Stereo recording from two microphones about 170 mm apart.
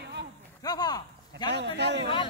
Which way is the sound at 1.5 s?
85° right.